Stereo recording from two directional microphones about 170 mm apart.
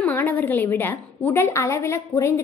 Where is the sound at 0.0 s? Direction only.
10° left (ahead or behind).